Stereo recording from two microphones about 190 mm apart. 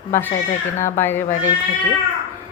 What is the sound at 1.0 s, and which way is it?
Speech, 10° left (ahead or behind).